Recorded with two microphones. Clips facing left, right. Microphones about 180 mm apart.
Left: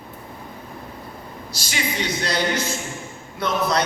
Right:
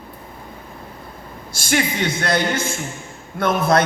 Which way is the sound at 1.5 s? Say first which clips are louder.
Right 7 dB; 55° right (ahead or behind).